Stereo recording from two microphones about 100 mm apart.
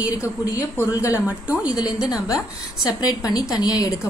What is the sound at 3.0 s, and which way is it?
Speech, 40° left (ahead or behind).